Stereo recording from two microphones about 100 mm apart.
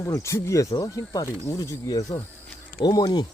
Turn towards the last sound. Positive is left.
turn(degrees=45)  # may be behind; listen again after turning